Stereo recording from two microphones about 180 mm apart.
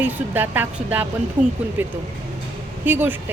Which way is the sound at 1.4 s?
45° right (ahead or behind).